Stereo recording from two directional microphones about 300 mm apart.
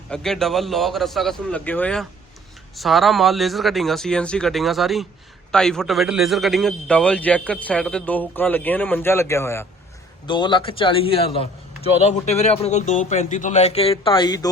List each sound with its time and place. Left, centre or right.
0.1 s a man's voice: centre